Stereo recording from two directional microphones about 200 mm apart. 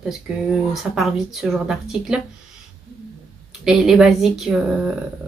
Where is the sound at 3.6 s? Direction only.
5° right (ahead or behind).